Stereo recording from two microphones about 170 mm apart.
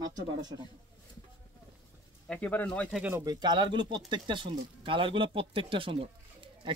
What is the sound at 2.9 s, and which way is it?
Speech, 10° right (ahead or behind).